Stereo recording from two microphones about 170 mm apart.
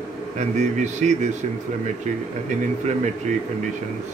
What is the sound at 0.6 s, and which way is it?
Speech, 45° right (ahead or behind).